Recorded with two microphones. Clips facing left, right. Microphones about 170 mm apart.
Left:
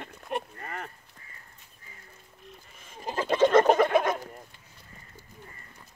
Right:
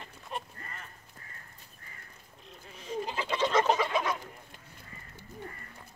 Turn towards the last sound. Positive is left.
turn(degrees=50)  # may be behind; listen again after turning